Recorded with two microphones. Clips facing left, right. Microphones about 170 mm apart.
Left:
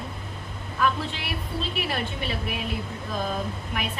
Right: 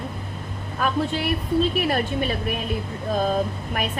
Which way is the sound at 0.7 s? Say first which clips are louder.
Right 3 dB; 45° right (ahead or behind).